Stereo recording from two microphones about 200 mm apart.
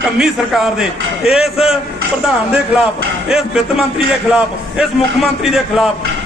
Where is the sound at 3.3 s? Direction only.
5° right (ahead or behind).